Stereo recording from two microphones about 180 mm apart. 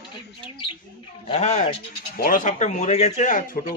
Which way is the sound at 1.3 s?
40° left (ahead or behind).